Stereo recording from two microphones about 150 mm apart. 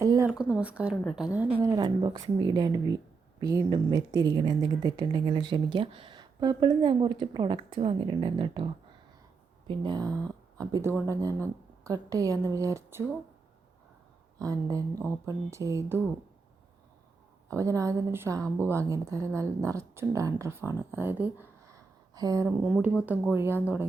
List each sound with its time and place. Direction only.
0.0 s a sound: 20° right (ahead or behind)
0.3 s a woman's voice: 5° right (ahead or behind)
1.6 s a woman's voice: 25° right (ahead or behind)
14.3 s speech: 25° right (ahead or behind)
17.5 s speech: 20° right (ahead or behind)
22.4 s a woman's voice: 5° right (ahead or behind)